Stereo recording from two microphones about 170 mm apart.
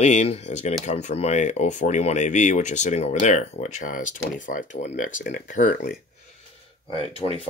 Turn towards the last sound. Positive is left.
turn(degrees=35)  # may be behind; listen again after turning